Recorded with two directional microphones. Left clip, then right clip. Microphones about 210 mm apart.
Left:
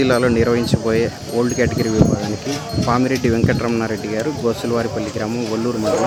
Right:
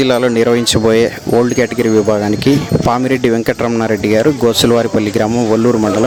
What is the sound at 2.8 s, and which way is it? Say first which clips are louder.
Speech: right 4 dB; 40° right (ahead or behind).